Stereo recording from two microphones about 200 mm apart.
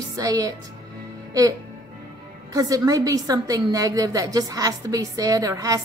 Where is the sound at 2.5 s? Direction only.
15° right (ahead or behind).